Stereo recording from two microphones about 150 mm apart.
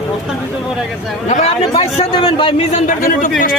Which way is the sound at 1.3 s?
50° left (ahead or behind).